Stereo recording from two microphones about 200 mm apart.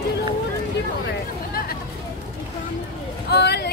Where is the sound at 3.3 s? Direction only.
55° left (ahead or behind).